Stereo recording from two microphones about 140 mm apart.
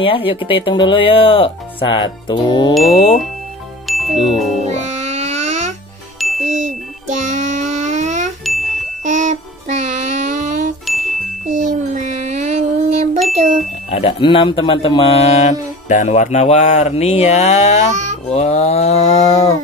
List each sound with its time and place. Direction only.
0.0 s speech: 40° left (ahead or behind)
2.8 s speech: 45° left (ahead or behind)
3.8 s music: centre (ahead or behind)
4.8 s a sound: 55° right (ahead or behind)
6.1 s music: centre (ahead or behind)
6.4 s music: 60° right (ahead or behind)
8.5 s music: centre (ahead or behind)
9.0 s music: 65° right (ahead or behind)
10.9 s music: centre (ahead or behind)
11.4 s a sound: 65° right (ahead or behind)
13.4 s bicycle bell: 55° right (ahead or behind)
13.8 s speech: 45° left (ahead or behind)